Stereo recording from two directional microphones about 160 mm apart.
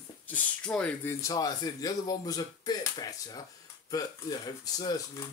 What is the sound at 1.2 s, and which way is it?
Speech, 20° left (ahead or behind).